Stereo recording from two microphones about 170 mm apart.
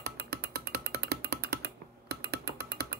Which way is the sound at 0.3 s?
70° right (ahead or behind).